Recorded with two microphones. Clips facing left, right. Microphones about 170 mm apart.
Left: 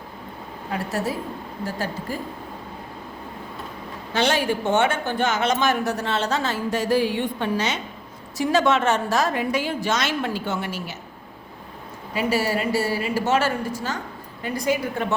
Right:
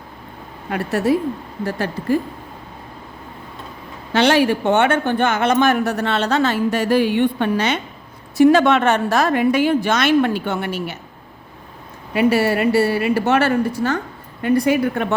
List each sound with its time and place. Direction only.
0.7 s speech: 65° right (ahead or behind)
4.1 s a woman's voice: 65° right (ahead or behind)
12.1 s a woman's voice: 65° right (ahead or behind)